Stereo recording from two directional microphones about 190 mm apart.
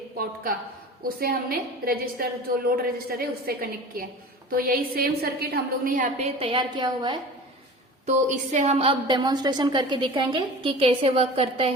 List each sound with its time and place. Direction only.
1.0 s a woman's voice: 50° right (ahead or behind); by 7.2 s 25° right (ahead or behind)
8.0 s a woman's voice: 40° right (ahead or behind)